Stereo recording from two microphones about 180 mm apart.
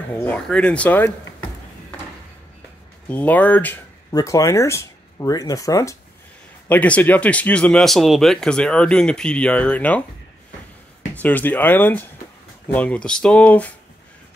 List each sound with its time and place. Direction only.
0.1 s speech: 10° left (ahead or behind)
3.1 s speech: 10° left (ahead or behind)
6.7 s speech: 10° left (ahead or behind)
11.2 s speech: 10° left (ahead or behind)